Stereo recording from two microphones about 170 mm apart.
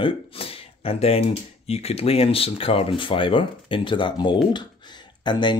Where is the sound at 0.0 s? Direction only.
35° left (ahead or behind).